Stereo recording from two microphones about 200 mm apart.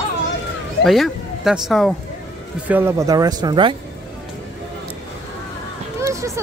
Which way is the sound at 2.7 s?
10° right (ahead or behind).